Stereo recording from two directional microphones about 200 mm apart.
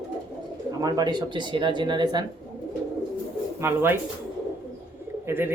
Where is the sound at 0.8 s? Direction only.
20° right (ahead or behind).